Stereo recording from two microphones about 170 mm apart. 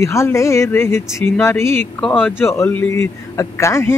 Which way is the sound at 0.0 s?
15° left (ahead or behind).